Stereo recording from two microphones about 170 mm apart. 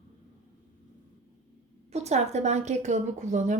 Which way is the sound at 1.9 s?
40° right (ahead or behind).